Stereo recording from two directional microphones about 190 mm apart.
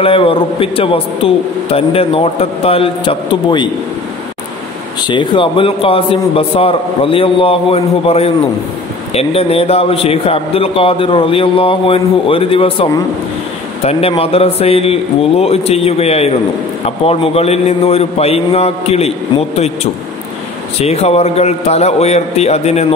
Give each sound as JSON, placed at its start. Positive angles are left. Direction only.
{"t": 0.0, "sound": "a man's voice", "side_deg": 30}
{"t": 5.0, "sound": "a man's voice", "side_deg": 25}
{"t": 13.8, "sound": "a man's voice", "side_deg": 30}